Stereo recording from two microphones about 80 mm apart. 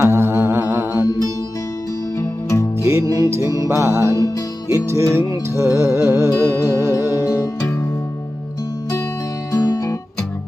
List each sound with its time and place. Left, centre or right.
0.0 s humming: right
2.1 s music: left
2.8 s music: right
9.5 s music: left